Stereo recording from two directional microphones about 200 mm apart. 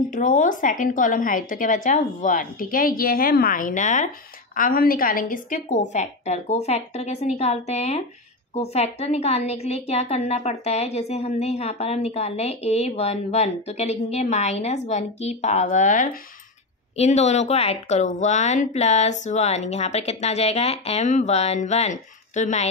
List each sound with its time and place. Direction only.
0.1 s a woman's voice: 40° left (ahead or behind)